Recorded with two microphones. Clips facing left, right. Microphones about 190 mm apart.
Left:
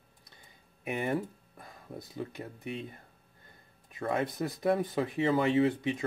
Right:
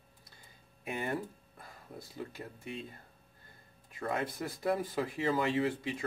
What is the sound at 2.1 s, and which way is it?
Speech, 20° left (ahead or behind).